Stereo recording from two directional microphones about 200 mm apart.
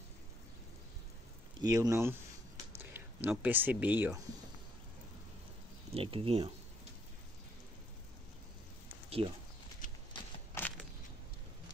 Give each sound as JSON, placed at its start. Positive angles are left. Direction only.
{"t": 1.6, "sound": "speech", "side_deg": -15}
{"t": 5.9, "sound": "speech", "side_deg": -30}
{"t": 9.2, "sound": "speech", "side_deg": -25}
{"t": 10.6, "sound": "a sound", "side_deg": 10}